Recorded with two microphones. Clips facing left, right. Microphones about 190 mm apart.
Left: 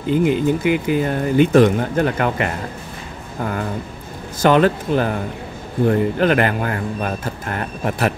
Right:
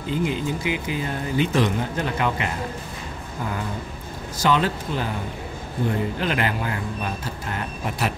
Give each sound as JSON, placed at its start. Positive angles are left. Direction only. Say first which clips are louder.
{"t": 0.1, "sound": "speech", "louder": "left 8 dB", "side_deg": 55}
{"t": 4.4, "sound": "speech", "louder": "left 7 dB", "side_deg": 55}